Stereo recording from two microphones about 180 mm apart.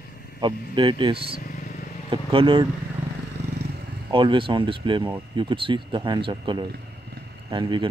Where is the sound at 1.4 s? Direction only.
55° left (ahead or behind).